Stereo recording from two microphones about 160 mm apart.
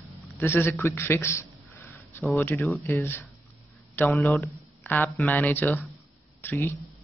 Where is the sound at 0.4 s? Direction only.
15° left (ahead or behind).